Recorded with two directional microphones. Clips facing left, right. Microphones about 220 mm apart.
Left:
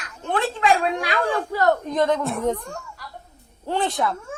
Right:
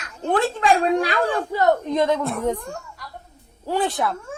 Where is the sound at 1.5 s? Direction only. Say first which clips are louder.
Right 2 dB; 20° right (ahead or behind).